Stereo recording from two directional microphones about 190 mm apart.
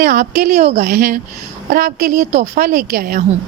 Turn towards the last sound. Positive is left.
turn(degrees=-50)  # may be behind; listen again after turning